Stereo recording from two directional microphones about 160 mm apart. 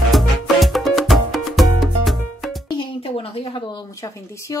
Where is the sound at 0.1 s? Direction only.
Centre (ahead or behind).